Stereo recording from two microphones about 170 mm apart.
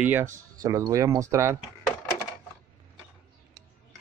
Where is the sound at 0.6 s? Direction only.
20° right (ahead or behind).